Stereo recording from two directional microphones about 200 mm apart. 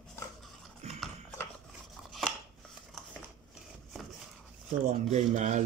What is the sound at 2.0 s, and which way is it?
Scissors, centre (ahead or behind).